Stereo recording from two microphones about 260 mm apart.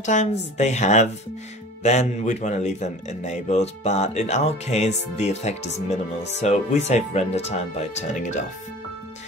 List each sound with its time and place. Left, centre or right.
0.0 s speech: left